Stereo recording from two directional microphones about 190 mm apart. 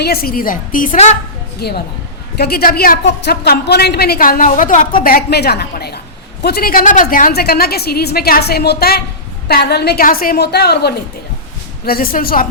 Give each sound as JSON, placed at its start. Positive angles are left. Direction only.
{"t": 0.0, "sound": "a woman's voice", "side_deg": 55}
{"t": 1.5, "sound": "a woman's voice", "side_deg": 55}